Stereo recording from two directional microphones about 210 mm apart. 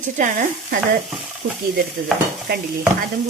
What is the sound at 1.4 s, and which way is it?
Stir, 70° right (ahead or behind).